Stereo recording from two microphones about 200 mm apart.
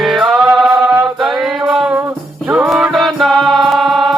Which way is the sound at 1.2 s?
Centre (ahead or behind).